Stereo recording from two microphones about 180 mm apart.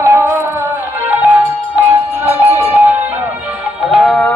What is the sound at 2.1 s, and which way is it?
Music, 10° right (ahead or behind).